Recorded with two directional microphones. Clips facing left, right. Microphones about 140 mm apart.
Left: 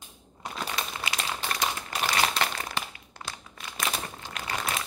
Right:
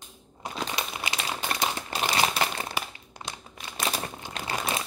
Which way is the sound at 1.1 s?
30° right (ahead or behind).